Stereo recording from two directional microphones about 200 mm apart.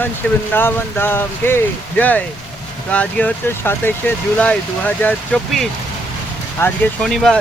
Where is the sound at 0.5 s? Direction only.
10° left (ahead or behind).